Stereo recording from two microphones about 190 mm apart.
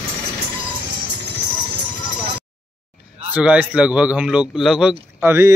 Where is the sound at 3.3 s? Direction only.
5° right (ahead or behind).